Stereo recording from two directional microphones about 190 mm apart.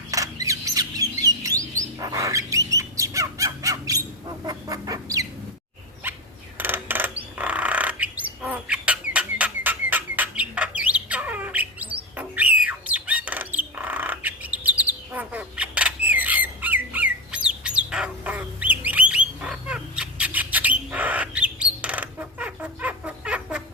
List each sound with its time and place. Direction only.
0.1 s bird: 15° right (ahead or behind)
6.0 s a sound: 10° right (ahead or behind)
6.6 s coin: 10° right (ahead or behind)
7.3 s squawk: 10° right (ahead or behind)
9.1 s chicken: 10° right (ahead or behind)